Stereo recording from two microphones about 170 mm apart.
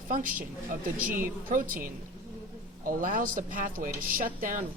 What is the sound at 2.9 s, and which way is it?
Speech, 55° right (ahead or behind).